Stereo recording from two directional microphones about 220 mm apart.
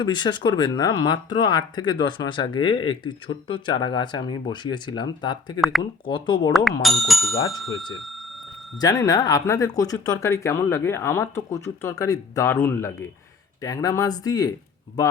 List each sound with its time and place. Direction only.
0.0 s speech: 20° left (ahead or behind)
5.5 s speech: centre (ahead or behind)
6.1 s speech: 20° left (ahead or behind)
6.8 s speech: centre (ahead or behind)
8.8 s speech: 15° left (ahead or behind)